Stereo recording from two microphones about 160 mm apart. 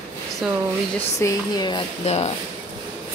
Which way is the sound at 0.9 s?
20° left (ahead or behind).